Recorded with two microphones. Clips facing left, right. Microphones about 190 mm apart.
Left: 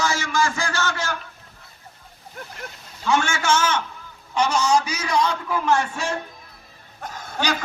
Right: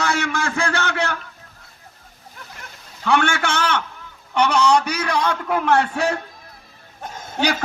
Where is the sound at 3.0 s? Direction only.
60° right (ahead or behind).